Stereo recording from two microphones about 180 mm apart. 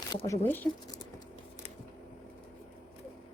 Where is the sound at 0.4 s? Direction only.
10° left (ahead or behind).